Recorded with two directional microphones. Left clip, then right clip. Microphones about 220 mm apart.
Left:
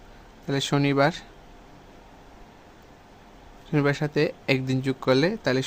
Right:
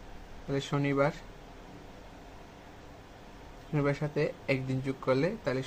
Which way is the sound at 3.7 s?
50° left (ahead or behind).